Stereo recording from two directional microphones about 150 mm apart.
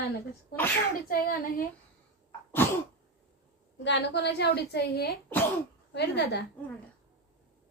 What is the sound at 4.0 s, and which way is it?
A woman's voice, 90° left.